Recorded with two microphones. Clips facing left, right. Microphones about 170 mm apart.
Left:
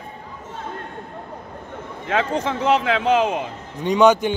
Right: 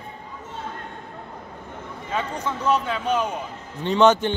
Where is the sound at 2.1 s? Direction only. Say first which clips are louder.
Left 6 dB; 90° left.